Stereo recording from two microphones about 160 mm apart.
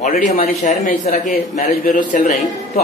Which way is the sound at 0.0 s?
55° left (ahead or behind).